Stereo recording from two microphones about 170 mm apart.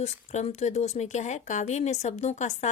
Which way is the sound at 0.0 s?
40° left (ahead or behind).